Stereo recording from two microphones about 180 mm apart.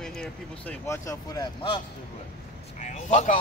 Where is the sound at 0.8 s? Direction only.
20° left (ahead or behind).